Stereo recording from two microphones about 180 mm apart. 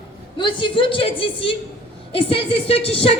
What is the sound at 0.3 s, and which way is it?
A woman's voice, 25° left (ahead or behind).